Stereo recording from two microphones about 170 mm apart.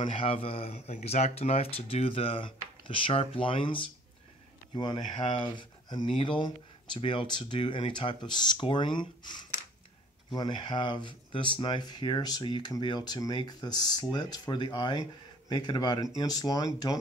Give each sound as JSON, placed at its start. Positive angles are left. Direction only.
{"t": 0.0, "sound": "speech", "side_deg": 35}